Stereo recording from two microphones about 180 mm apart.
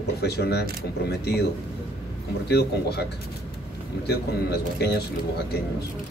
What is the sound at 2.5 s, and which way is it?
Speech, 65° left (ahead or behind).